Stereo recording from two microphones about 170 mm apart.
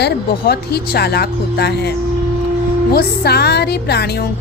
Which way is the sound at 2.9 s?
70° left (ahead or behind).